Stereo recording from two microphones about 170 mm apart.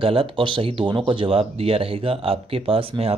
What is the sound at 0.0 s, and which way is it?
Speech, 30° right (ahead or behind).